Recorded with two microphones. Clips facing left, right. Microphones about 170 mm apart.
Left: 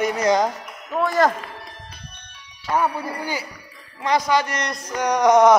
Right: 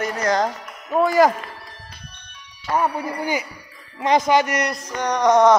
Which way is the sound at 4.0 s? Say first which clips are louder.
Right 3 dB; 20° right (ahead or behind).